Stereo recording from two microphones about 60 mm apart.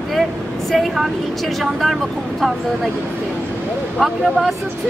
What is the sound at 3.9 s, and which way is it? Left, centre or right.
Speech, centre.